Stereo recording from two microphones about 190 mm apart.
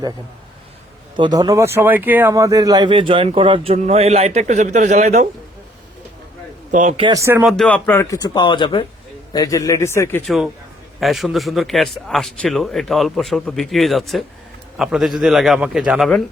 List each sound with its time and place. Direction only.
1.1 s speech: 20° right (ahead or behind); by 5.3 s 40° right (ahead or behind)
6.7 s a man's voice: 40° right (ahead or behind)
7.0 s speech: 15° right (ahead or behind)
7.4 s speech: 5° left (ahead or behind)
10.2 s a man's voice: centre (ahead or behind)